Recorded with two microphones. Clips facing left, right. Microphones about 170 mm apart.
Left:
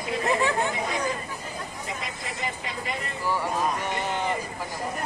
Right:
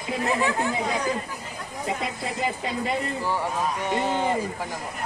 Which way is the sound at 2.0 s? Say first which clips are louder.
Right 6 dB; 30° right (ahead or behind).